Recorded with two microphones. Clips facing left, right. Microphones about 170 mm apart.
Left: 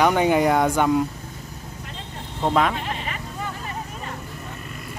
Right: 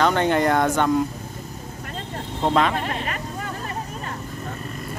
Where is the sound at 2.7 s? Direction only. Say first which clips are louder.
Right 3 dB; 50° right (ahead or behind).